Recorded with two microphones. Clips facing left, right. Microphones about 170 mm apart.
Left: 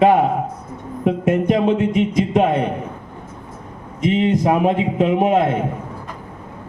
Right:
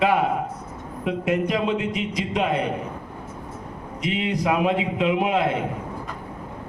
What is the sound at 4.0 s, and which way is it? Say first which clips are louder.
A man's voice: left 8 dB; 45° left (ahead or behind).